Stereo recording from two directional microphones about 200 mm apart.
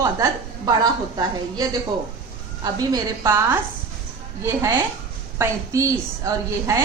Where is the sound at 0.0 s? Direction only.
15° right (ahead or behind).